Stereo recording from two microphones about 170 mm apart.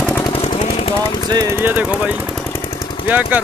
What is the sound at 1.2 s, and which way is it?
Speech, 25° right (ahead or behind).